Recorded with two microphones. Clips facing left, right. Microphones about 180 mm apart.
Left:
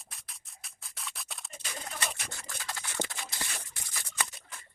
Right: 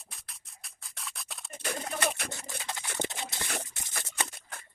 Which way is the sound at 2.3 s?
20° right (ahead or behind).